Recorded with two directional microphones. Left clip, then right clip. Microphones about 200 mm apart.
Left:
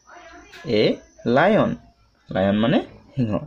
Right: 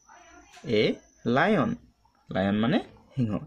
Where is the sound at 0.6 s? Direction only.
40° right (ahead or behind).